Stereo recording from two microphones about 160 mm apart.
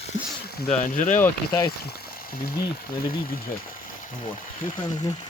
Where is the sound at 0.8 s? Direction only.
50° left (ahead or behind).